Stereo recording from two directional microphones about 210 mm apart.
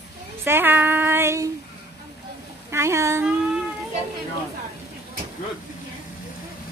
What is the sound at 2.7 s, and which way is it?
Speech, 15° right (ahead or behind).